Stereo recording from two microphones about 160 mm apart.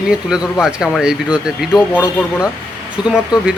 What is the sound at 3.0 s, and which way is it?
Speech, 5° right (ahead or behind).